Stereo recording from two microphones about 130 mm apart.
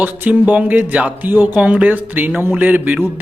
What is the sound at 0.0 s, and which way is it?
Speech, 15° right (ahead or behind).